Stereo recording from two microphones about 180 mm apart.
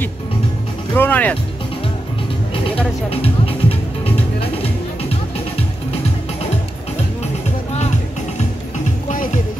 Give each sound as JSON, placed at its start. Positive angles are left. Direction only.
{"t": 0.9, "sound": "speech", "side_deg": 10}
{"t": 2.7, "sound": "music", "side_deg": 30}